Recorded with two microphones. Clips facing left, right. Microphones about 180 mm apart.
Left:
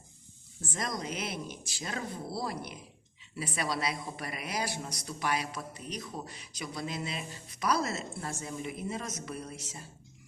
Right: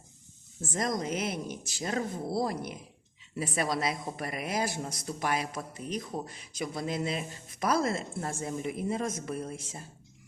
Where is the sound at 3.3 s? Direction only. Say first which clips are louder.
Right 4 dB; 45° right (ahead or behind).